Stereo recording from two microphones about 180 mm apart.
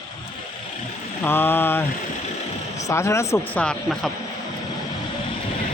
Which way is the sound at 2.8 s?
15° left (ahead or behind).